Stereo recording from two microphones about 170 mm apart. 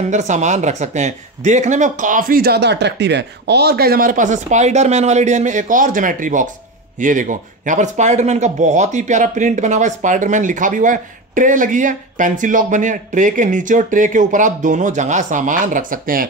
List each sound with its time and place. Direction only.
0.1 s speech: 45° right (ahead or behind)